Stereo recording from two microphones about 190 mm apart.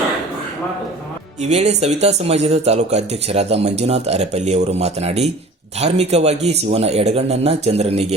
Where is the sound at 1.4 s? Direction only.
35° right (ahead or behind).